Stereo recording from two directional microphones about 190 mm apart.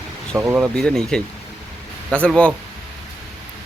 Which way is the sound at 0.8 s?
5° left (ahead or behind).